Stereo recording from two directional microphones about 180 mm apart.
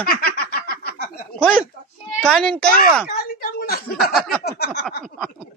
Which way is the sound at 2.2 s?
5° left (ahead or behind).